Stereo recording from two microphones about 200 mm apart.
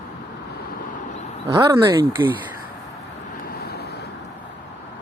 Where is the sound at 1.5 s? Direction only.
20° right (ahead or behind).